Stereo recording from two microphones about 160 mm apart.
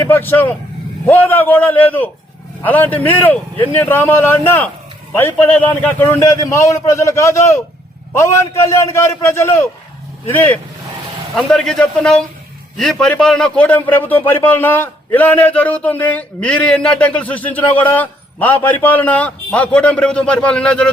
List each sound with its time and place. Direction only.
0.0 s a man's voice: 15° left (ahead or behind)